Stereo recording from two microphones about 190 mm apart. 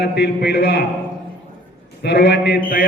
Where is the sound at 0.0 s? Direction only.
60° left (ahead or behind).